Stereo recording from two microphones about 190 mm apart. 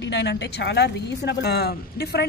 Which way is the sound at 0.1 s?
65° left (ahead or behind).